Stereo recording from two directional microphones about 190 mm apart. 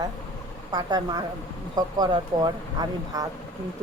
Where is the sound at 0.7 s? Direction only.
20° right (ahead or behind).